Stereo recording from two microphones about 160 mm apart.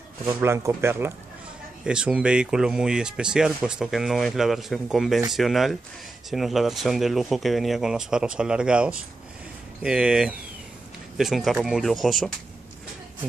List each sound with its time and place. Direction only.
0.2 s speech: 15° right (ahead or behind)